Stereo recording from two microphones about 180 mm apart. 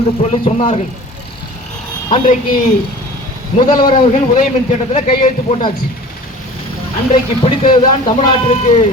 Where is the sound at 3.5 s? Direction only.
25° left (ahead or behind).